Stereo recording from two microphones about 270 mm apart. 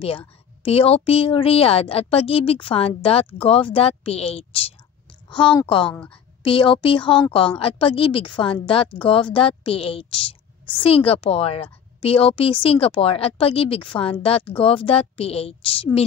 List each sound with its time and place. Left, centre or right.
0.6 s a woman's voice: left
5.9 s a woman's voice: centre
6.4 s a woman's voice: centre